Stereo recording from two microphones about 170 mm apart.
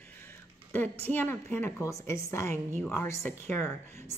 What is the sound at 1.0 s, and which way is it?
A woman's voice, 10° left (ahead or behind).